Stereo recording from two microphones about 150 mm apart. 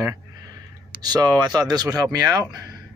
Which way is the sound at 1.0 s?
25° right (ahead or behind).